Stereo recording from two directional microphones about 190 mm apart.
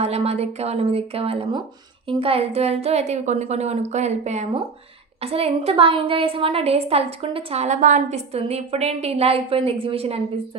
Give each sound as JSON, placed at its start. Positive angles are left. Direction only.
{"t": 0.0, "sound": "a woman's voice", "side_deg": -35}